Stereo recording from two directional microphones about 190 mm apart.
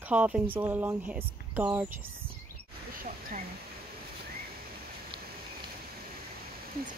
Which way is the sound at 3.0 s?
45° right (ahead or behind).